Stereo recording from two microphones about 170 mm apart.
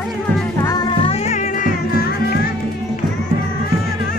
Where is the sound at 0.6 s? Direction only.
25° left (ahead or behind); by 2.2 s 55° left (ahead or behind).